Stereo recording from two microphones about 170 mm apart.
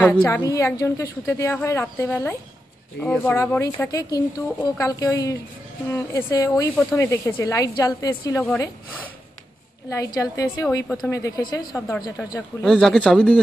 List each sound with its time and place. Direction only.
0.0 s a woman's voice: 10° left (ahead or behind)
9.8 s a woman's voice: 20° left (ahead or behind)
12.6 s speech: 5° left (ahead or behind)